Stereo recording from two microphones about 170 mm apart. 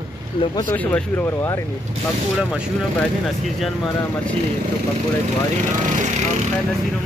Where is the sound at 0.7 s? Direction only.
10° left (ahead or behind).